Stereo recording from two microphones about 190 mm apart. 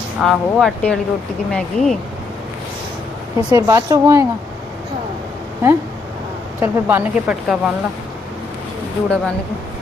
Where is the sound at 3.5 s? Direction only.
15° right (ahead or behind).